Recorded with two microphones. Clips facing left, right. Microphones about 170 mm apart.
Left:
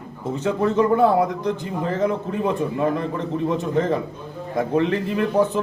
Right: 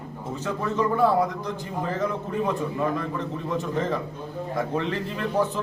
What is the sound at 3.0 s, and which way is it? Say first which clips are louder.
A man's voice: left 5 dB; 20° left (ahead or behind).